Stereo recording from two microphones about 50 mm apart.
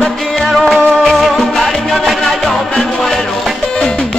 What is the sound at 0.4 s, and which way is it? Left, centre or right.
Music, centre.